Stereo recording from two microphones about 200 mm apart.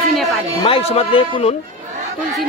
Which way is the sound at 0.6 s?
30° left (ahead or behind).